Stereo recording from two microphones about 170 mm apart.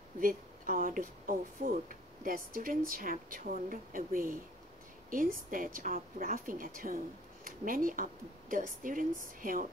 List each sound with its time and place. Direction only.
0.2 s speech: 50° right (ahead or behind)